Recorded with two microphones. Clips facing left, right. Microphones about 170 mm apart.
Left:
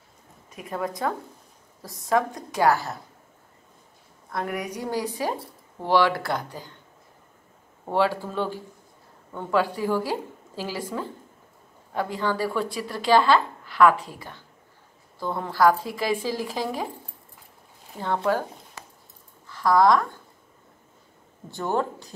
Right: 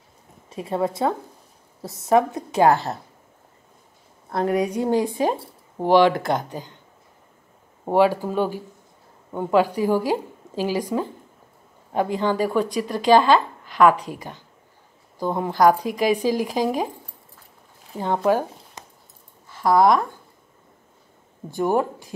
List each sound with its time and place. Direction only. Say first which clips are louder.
0.5 s speech: right 6 dB; 30° right (ahead or behind)
4.3 s a woman's voice: right 8 dB; 30° right (ahead or behind)
4.8 s speech: right 7 dB; 20° right (ahead or behind)
7.9 s speech: right 5 dB; 15° right (ahead or behind)
17.9 s speech: right 4 dB; 15° right (ahead or behind)
21.5 s speech: right 5 dB; 15° right (ahead or behind)